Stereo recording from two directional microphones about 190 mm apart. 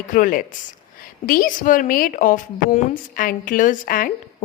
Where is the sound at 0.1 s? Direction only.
45° left (ahead or behind).